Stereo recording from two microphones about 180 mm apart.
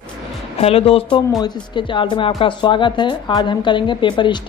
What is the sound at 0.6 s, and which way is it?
A woman's voice, 35° left (ahead or behind).